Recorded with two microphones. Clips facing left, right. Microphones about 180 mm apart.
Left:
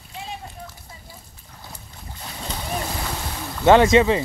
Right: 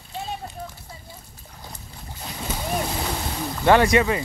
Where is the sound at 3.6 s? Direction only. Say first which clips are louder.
Left 3 dB; 20° left (ahead or behind).